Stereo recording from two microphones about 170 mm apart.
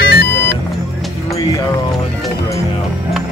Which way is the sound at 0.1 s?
80° left.